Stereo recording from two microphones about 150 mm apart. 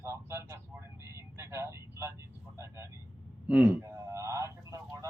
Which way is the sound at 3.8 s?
20° right (ahead or behind).